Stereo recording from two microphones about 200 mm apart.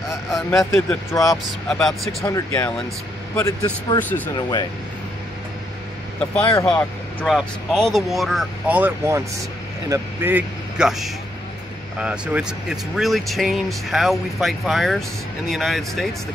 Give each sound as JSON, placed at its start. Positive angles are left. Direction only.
{"t": 0.5, "sound": "speech", "side_deg": 15}
{"t": 1.7, "sound": "speech", "side_deg": 5}
{"t": 2.2, "sound": "speech", "side_deg": 15}
{"t": 6.6, "sound": "speech", "side_deg": 5}